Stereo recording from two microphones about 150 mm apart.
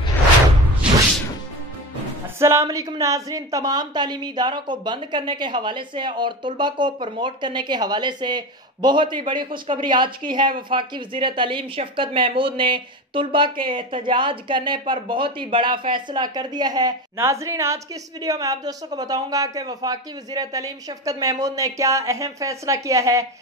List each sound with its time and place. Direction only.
2.3 s a woman's voice: 20° right (ahead or behind)